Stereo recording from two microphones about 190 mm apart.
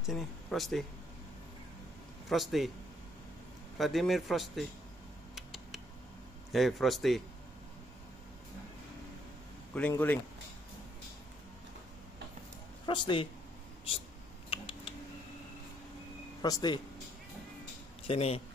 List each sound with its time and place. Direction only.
0.0 s speech: centre (ahead or behind)
2.2 s a man's voice: centre (ahead or behind)
3.7 s a man's voice: centre (ahead or behind)
5.3 s a sound: centre (ahead or behind)
6.5 s a man's voice: centre (ahead or behind)
9.8 s speech: 10° left (ahead or behind)
12.8 s speech: 25° left (ahead or behind)
14.5 s typing: 30° left (ahead or behind)
16.3 s speech: 20° left (ahead or behind)
18.0 s speech: 30° left (ahead or behind)